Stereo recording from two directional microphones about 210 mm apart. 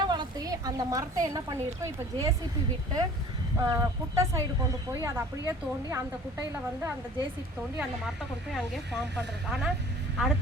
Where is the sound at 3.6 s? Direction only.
15° right (ahead or behind).